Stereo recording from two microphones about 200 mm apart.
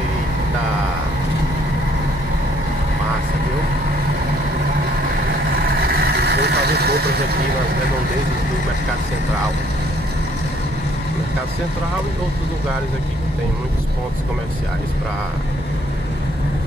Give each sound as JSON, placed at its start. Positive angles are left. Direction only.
{"t": 5.8, "sound": "vehicle", "side_deg": -50}